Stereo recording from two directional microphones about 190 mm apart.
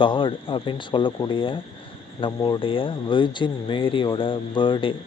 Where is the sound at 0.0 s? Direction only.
25° left (ahead or behind).